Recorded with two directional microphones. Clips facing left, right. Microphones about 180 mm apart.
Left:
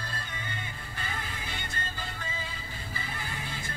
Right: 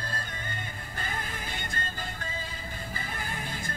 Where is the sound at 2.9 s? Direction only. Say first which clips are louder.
Even; 45° right (ahead or behind).